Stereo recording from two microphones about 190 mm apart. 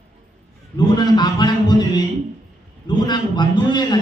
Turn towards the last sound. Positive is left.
turn(degrees=25)  # may be behind; listen again after turning